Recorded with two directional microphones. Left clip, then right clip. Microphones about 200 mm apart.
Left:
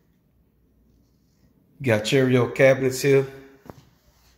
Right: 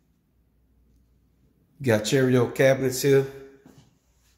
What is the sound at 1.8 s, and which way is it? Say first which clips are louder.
Speech: left 1 dB; 15° right (ahead or behind).